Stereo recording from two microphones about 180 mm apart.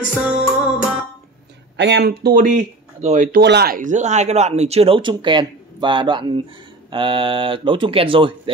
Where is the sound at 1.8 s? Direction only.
70° right (ahead or behind); by 3.4 s 45° right (ahead or behind).